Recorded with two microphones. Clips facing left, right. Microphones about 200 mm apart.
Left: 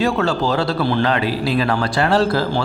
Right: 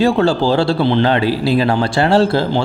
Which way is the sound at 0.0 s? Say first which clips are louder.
Right 5 dB; 30° right (ahead or behind).